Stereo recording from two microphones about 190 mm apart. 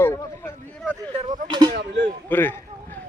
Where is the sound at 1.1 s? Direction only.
25° right (ahead or behind).